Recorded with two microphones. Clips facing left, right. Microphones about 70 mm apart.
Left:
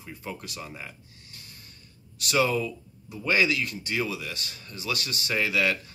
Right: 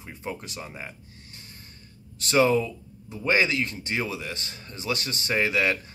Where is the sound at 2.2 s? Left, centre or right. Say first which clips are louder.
Right 4 dB; right.